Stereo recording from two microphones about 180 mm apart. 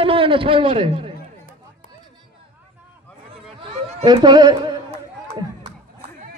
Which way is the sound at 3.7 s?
35° right (ahead or behind).